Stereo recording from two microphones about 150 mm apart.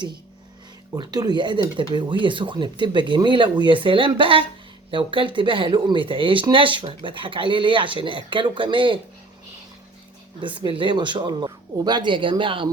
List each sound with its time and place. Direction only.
0.9 s speech: 25° right (ahead or behind)
10.4 s speech: 35° right (ahead or behind)